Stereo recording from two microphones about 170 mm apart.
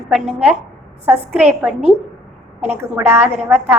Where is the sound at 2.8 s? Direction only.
15° right (ahead or behind).